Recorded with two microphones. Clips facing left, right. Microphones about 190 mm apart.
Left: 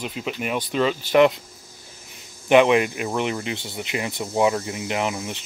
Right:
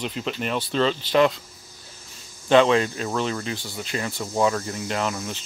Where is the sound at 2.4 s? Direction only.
15° left (ahead or behind).